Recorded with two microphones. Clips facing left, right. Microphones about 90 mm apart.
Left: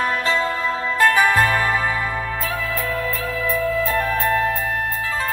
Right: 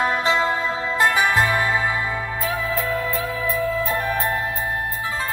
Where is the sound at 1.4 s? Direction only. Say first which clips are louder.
Left 1 dB; 45° left (ahead or behind).